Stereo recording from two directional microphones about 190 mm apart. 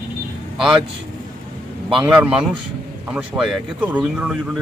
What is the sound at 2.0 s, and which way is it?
Speech, 5° right (ahead or behind).